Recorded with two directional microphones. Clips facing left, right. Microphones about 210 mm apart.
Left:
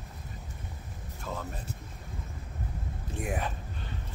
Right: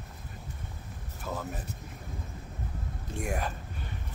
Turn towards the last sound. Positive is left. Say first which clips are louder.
# even
turn(degrees=0)  # may be behind; listen again after turning